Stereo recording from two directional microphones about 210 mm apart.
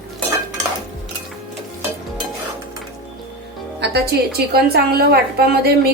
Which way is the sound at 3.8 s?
50° right (ahead or behind).